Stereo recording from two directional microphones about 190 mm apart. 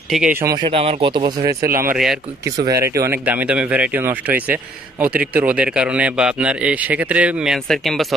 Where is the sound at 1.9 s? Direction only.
Centre (ahead or behind).